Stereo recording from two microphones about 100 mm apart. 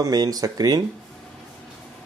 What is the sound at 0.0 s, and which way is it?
Speech, 40° right (ahead or behind).